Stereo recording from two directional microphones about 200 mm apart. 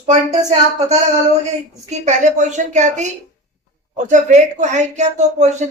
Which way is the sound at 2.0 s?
35° right (ahead or behind).